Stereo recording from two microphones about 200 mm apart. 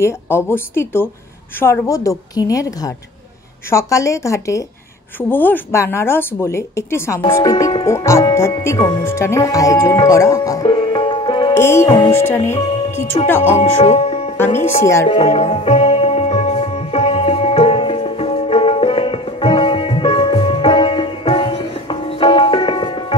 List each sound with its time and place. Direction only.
0.0 s speech: 10° left (ahead or behind)
12.5 s music: 30° left (ahead or behind)
13.2 s speech: 30° left (ahead or behind)
14.3 s speech: 10° left (ahead or behind)
15.0 s music: 30° left (ahead or behind)